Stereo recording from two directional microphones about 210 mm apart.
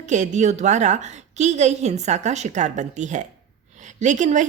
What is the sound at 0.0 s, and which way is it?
A woman's voice, 35° right (ahead or behind).